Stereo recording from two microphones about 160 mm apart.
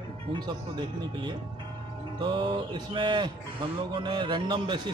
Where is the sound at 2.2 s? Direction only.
30° right (ahead or behind).